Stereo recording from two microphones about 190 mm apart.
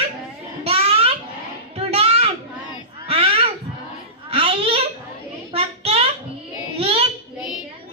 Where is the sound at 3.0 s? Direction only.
30° right (ahead or behind).